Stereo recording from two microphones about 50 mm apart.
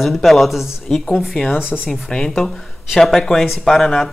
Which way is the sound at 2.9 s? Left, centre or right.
Centre.